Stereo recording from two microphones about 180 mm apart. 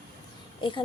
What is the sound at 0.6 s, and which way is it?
Speech, 25° left (ahead or behind).